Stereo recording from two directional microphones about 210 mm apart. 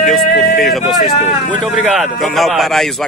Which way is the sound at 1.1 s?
35° left (ahead or behind).